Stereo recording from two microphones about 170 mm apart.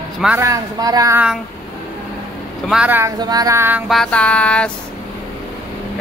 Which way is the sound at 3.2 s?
20° right (ahead or behind).